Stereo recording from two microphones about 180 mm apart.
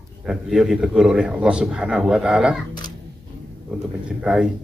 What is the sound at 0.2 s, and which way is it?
A man's voice, 5° right (ahead or behind).